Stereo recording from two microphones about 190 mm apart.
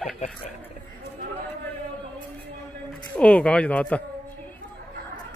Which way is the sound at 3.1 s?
5° left (ahead or behind).